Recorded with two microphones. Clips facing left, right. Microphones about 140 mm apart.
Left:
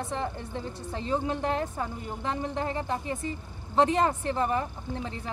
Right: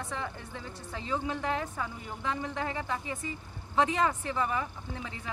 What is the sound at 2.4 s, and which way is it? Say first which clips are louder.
Speech: left 4 dB; 25° left (ahead or behind).